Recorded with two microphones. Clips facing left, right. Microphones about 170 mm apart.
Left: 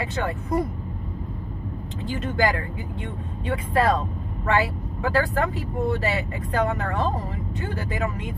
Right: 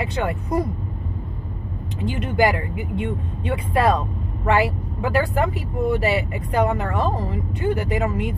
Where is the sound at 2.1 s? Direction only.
15° right (ahead or behind).